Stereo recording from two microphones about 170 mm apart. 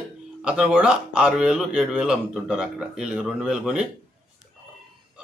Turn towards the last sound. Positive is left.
turn(degrees=-5)  # may be behind; listen again after turning